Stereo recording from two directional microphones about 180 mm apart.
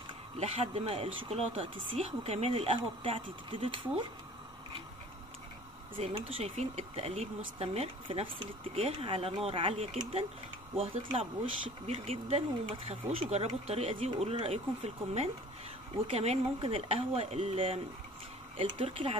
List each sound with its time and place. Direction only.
0.4 s speech: 35° right (ahead or behind)
5.9 s speech: 30° right (ahead or behind)